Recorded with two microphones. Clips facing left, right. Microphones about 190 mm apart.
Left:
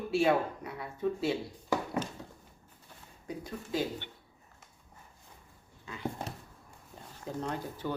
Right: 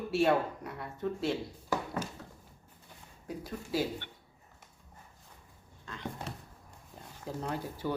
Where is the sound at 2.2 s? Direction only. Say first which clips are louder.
Left 2 dB; 15° left (ahead or behind).